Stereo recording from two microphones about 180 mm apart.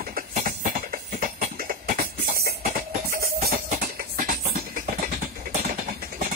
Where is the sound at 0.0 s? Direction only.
50° right (ahead or behind).